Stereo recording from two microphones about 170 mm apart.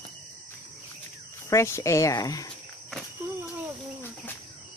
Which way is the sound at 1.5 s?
15° left (ahead or behind).